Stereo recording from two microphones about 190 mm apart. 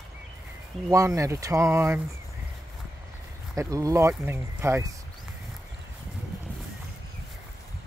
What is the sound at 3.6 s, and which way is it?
Speech, 15° right (ahead or behind).